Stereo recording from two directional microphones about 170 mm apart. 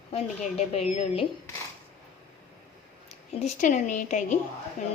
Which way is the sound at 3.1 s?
45° left (ahead or behind).